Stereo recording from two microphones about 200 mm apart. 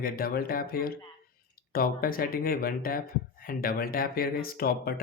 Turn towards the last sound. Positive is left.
turn(degrees=50)  # may be behind; listen again after turning